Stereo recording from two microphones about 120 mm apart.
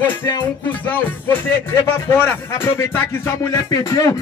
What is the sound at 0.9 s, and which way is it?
Speech, 20° left (ahead or behind).